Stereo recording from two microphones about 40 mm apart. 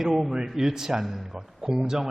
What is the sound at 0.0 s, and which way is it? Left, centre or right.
A man's voice, centre.